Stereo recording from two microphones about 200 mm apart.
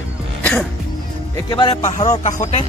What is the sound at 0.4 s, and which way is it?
Music, 5° left (ahead or behind).